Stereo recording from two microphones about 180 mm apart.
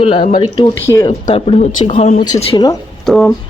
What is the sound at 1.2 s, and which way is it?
Speech, 35° left (ahead or behind).